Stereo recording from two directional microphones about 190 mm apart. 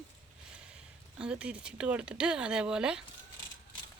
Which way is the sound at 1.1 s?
5° right (ahead or behind).